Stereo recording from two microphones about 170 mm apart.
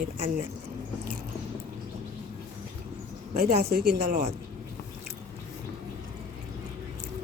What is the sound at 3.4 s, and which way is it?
Speech, 70° right (ahead or behind).